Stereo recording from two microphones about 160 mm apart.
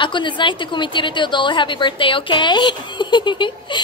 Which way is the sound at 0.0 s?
30° left (ahead or behind).